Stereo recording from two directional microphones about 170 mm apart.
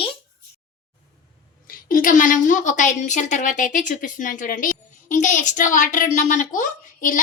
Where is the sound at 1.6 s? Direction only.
55° left (ahead or behind).